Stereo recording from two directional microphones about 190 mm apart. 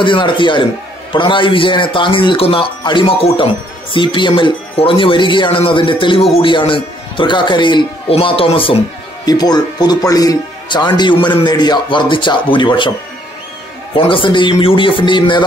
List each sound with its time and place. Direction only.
0.0 s speech: 25° left (ahead or behind)
13.9 s speech: 25° left (ahead or behind)